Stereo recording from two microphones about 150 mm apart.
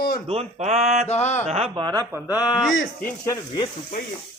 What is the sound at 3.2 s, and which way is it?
Speech, 20° left (ahead or behind).